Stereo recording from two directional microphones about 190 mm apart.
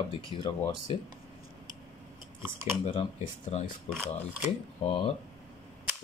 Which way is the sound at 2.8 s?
30° left (ahead or behind).